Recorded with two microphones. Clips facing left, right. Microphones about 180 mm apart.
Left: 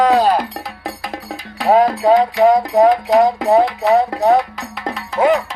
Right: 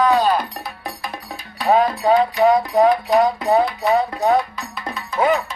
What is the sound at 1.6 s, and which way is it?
Speech, 90° left.